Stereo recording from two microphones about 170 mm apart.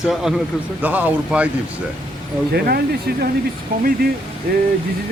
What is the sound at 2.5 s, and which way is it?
Speech, 65° right (ahead or behind).